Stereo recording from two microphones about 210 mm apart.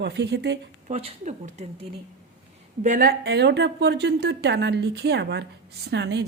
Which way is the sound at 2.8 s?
40° right (ahead or behind).